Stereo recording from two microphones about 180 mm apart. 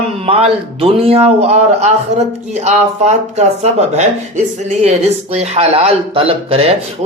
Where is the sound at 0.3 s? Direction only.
30° right (ahead or behind).